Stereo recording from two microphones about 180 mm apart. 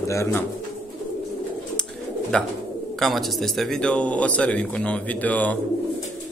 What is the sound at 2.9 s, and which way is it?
Speech, centre (ahead or behind).